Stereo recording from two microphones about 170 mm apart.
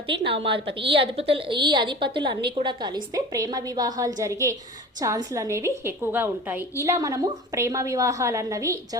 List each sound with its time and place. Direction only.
0.4 s a woman's voice: 30° right (ahead or behind)